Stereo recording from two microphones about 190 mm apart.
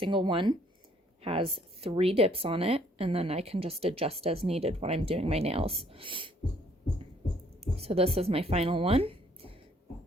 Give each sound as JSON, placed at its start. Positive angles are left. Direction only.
{"t": 0.0, "sound": "speech", "side_deg": -25}
{"t": 7.8, "sound": "speech", "side_deg": -30}